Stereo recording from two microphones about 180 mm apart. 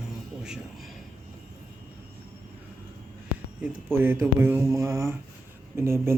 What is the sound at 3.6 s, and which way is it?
Speech, 10° right (ahead or behind).